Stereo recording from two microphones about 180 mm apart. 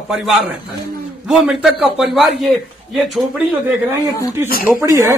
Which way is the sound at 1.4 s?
5° right (ahead or behind).